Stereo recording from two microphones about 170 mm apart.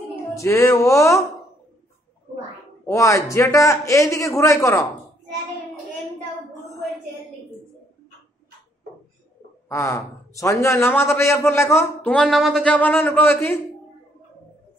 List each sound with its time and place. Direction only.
0.4 s a man's voice: 20° left (ahead or behind)
2.8 s a man's voice: 20° left (ahead or behind)
9.7 s a man's voice: 15° left (ahead or behind)